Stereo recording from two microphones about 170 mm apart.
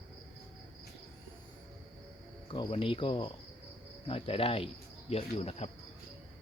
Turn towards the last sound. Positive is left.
turn(degrees=40)  # may be behind; listen again after turning